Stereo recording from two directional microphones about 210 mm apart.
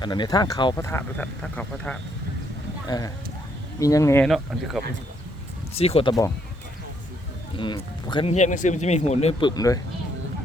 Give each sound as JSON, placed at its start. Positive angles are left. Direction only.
{"t": 0.0, "sound": "speech", "side_deg": 20}
{"t": 2.8, "sound": "speech", "side_deg": 15}
{"t": 5.7, "sound": "speech", "side_deg": 30}
{"t": 7.6, "sound": "speech", "side_deg": 20}